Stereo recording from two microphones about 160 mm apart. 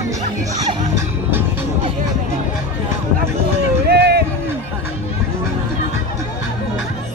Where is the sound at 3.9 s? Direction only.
90° right.